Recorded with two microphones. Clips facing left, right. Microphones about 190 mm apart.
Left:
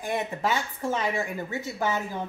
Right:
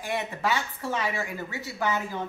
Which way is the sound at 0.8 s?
15° left (ahead or behind).